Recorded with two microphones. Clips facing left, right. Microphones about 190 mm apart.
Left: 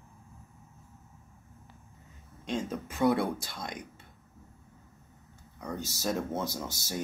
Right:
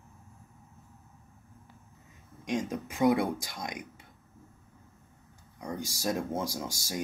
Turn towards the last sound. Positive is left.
turn(degrees=-10)  # may be behind; listen again after turning